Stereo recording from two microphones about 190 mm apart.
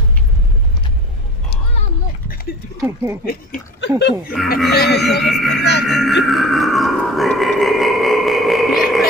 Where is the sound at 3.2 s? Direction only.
60° left (ahead or behind).